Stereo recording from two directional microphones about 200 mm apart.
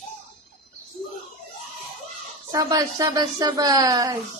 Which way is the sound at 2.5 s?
15° right (ahead or behind).